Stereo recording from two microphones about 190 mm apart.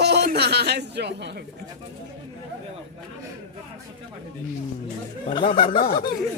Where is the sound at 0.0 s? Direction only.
60° right (ahead or behind).